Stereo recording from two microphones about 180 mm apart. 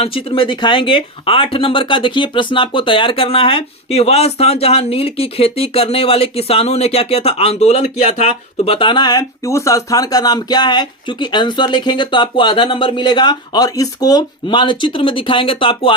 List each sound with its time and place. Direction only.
0.0 s speech: 30° left (ahead or behind)